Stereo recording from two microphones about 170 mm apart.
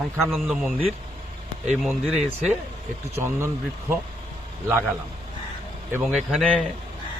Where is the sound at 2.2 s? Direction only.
45° right (ahead or behind).